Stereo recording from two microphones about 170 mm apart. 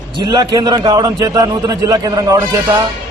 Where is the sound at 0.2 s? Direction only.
25° right (ahead or behind).